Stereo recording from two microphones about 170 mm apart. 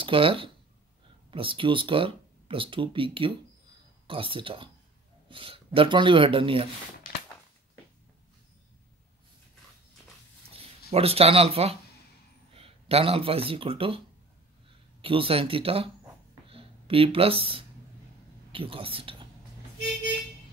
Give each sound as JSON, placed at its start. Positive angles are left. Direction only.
{"t": 0.0, "sound": "speech", "side_deg": -30}
{"t": 10.9, "sound": "speech", "side_deg": -35}
{"t": 16.4, "sound": "a sound", "side_deg": -35}
{"t": 18.5, "sound": "speech", "side_deg": -30}